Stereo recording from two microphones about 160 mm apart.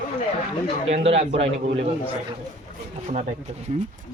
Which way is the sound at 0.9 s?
40° right (ahead or behind).